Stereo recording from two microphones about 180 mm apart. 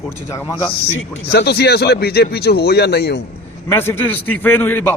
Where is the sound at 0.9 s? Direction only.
70° left (ahead or behind).